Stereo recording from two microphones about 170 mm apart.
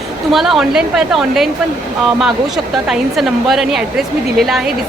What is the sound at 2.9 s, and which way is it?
Speech, centre (ahead or behind).